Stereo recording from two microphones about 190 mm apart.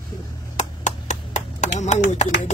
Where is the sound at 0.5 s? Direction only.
40° left (ahead or behind).